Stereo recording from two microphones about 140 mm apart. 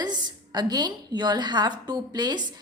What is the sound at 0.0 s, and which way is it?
A woman's voice, 30° right (ahead or behind).